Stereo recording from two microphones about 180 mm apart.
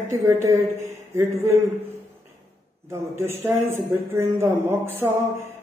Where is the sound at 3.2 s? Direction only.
15° right (ahead or behind).